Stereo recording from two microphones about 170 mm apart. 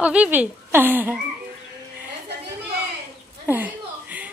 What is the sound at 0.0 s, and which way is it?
A woman's voice, 10° right (ahead or behind).